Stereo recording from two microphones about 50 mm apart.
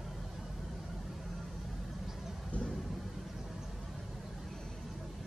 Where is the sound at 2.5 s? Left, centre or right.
Left.